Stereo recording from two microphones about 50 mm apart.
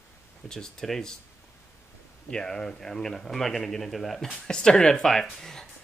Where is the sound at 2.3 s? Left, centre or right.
Centre.